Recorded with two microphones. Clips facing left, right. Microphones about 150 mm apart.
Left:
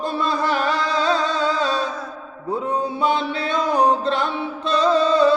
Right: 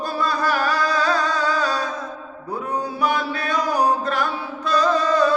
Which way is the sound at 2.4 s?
25° left (ahead or behind).